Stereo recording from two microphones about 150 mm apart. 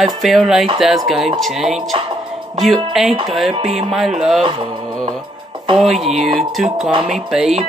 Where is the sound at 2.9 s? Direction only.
Centre (ahead or behind).